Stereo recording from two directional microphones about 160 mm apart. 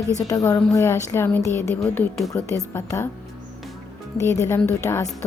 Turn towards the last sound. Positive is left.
turn(degrees=15)  # may be behind; listen again after turning